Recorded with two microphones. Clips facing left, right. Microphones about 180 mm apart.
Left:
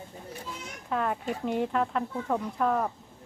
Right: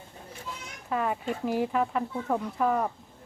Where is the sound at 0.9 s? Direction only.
5° right (ahead or behind).